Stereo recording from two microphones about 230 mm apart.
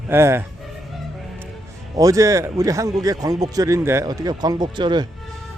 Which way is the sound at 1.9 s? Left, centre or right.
Centre.